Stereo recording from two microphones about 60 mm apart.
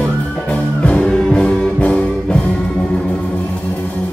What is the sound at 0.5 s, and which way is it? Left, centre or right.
Music, centre.